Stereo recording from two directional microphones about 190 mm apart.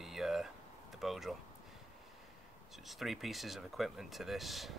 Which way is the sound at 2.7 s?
Centre (ahead or behind).